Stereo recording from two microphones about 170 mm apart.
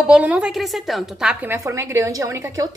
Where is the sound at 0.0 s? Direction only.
5° right (ahead or behind).